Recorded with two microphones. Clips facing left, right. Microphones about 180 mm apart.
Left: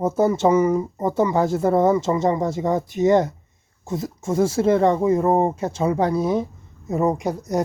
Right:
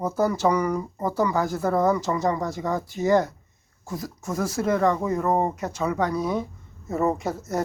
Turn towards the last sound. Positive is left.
turn(degrees=15)  # may be behind; listen again after turning